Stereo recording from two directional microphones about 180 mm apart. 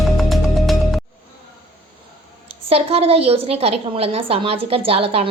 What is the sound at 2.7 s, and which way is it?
A woman's voice, 35° right (ahead or behind).